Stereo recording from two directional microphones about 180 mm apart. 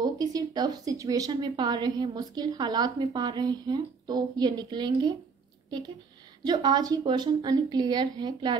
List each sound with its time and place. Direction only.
0.0 s speech: 20° right (ahead or behind)
6.4 s speech: 20° right (ahead or behind)